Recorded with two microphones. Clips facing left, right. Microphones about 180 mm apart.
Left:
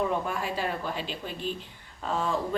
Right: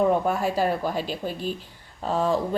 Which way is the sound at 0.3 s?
40° right (ahead or behind).